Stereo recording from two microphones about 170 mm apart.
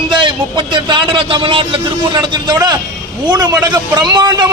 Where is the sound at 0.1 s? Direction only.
30° right (ahead or behind).